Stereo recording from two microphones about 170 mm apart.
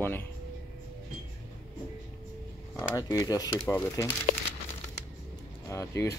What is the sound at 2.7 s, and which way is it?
Speech, 20° left (ahead or behind).